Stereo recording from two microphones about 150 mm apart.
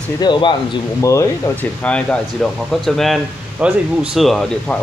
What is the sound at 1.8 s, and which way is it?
Speech, 5° left (ahead or behind).